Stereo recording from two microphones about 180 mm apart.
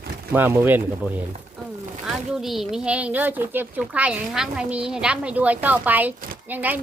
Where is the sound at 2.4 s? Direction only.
Centre (ahead or behind).